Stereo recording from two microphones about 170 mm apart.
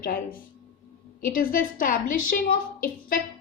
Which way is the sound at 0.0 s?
60° left (ahead or behind).